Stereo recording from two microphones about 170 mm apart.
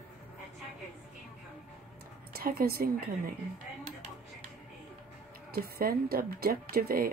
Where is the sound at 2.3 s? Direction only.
60° right (ahead or behind).